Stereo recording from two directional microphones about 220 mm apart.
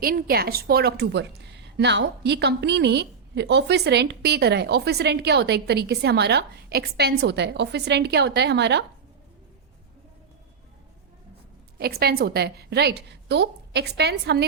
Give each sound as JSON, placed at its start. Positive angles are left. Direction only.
{"t": 0.0, "sound": "a woman's voice", "side_deg": -40}
{"t": 11.8, "sound": "a woman's voice", "side_deg": -45}